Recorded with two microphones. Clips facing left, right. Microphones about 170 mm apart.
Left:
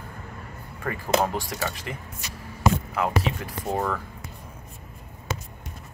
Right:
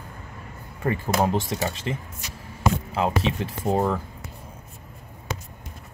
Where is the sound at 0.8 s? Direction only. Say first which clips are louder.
Right 1 dB; 25° right (ahead or behind).